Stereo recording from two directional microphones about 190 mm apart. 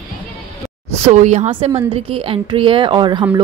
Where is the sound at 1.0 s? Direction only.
35° right (ahead or behind); by 3.4 s 20° right (ahead or behind).